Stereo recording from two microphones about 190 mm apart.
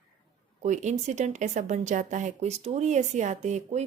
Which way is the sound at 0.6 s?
40° right (ahead or behind).